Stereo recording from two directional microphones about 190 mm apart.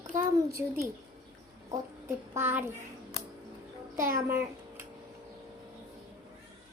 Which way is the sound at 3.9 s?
15° right (ahead or behind).